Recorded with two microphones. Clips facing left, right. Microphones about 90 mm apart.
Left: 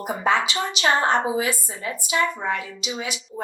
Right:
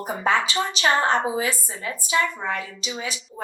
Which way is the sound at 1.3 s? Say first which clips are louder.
Left 1 dB; 35° right (ahead or behind).